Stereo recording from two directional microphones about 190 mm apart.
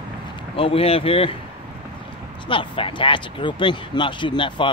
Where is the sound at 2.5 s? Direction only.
25° left (ahead or behind).